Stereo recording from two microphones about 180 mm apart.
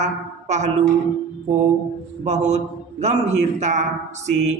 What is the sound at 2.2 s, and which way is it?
A man's voice, 40° right (ahead or behind).